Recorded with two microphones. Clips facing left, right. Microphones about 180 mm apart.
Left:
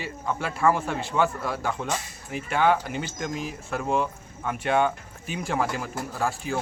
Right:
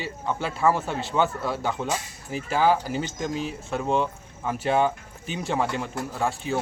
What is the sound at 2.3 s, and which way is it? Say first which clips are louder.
Speech: right 1 dB; 30° right (ahead or behind).